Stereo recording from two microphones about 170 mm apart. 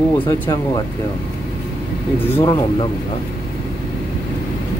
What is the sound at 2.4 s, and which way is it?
Speech, 30° left (ahead or behind).